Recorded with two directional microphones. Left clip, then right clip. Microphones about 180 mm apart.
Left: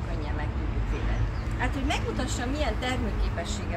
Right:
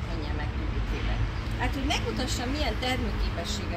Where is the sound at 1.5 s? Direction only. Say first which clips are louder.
Even; 10° left (ahead or behind).